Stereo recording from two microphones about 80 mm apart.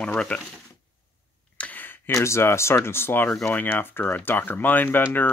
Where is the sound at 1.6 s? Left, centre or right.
Left.